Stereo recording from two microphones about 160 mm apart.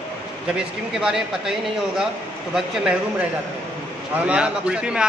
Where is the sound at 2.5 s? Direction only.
5° right (ahead or behind).